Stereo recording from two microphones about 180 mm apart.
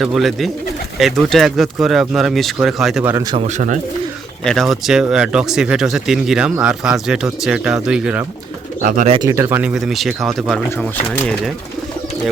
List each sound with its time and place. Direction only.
0.0 s speech: centre (ahead or behind)
3.0 s speech: 10° right (ahead or behind)
3.4 s speech: 45° right (ahead or behind)
4.4 s speech: centre (ahead or behind)
8.8 s speech: 50° right (ahead or behind)
9.0 s speech: 25° right (ahead or behind)
9.3 s speech: 10° right (ahead or behind); by 11.5 s 5° left (ahead or behind)